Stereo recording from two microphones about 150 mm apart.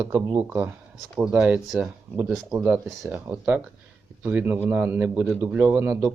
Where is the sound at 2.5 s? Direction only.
20° right (ahead or behind).